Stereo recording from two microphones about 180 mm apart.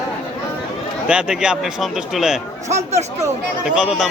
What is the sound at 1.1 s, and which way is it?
Speech, 5° right (ahead or behind).